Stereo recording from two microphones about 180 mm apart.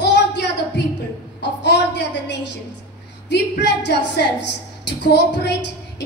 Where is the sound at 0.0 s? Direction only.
70° left (ahead or behind).